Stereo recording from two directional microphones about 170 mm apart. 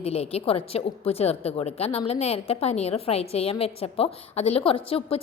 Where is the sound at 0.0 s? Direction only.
35° left (ahead or behind).